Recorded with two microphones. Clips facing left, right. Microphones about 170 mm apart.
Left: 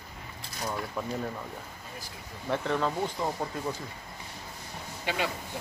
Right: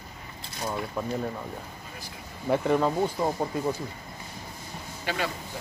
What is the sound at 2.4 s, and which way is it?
Speech, 15° right (ahead or behind).